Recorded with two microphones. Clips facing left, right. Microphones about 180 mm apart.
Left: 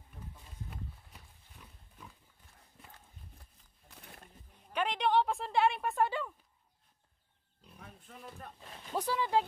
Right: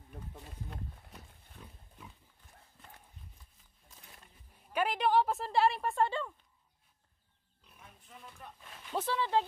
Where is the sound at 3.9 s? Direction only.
70° left (ahead or behind).